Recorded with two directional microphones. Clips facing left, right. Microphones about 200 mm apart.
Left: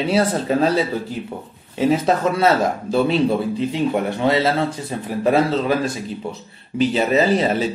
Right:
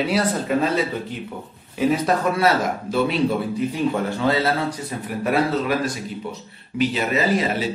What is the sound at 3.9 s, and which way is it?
Speech, 20° left (ahead or behind).